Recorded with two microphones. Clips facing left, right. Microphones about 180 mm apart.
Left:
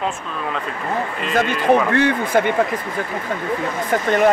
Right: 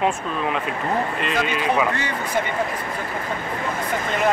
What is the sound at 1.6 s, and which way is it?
Speech, 55° left (ahead or behind).